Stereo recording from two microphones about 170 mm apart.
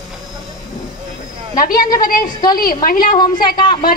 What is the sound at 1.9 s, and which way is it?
A woman's voice, 55° left (ahead or behind).